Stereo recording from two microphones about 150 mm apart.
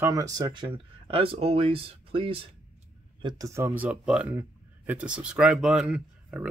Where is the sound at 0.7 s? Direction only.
40° right (ahead or behind).